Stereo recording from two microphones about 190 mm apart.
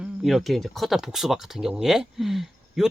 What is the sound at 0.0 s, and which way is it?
Speech, centre (ahead or behind).